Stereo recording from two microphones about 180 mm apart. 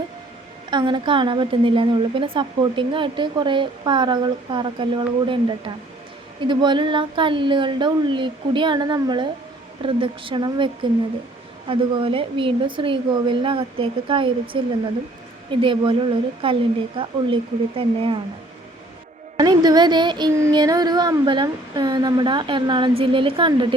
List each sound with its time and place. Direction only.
0.7 s a woman's voice: 25° right (ahead or behind)
11.7 s a woman's voice: 30° right (ahead or behind)
15.6 s a woman's voice: 30° right (ahead or behind)
19.4 s a woman's voice: 20° right (ahead or behind)